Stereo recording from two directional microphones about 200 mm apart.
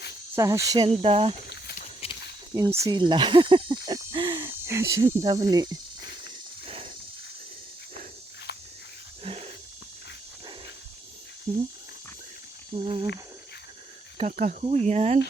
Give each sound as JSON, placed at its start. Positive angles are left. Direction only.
{"t": 0.3, "sound": "cricket", "side_deg": -15}
{"t": 0.8, "sound": "speech", "side_deg": -30}
{"t": 1.5, "sound": "a sound", "side_deg": 55}
{"t": 2.0, "sound": "snake", "side_deg": 30}
{"t": 2.6, "sound": "speech", "side_deg": -15}
{"t": 5.2, "sound": "snake", "side_deg": -20}
{"t": 9.2, "sound": "wild animals", "side_deg": -30}
{"t": 12.7, "sound": "speech", "side_deg": -30}
{"t": 14.2, "sound": "speech", "side_deg": -35}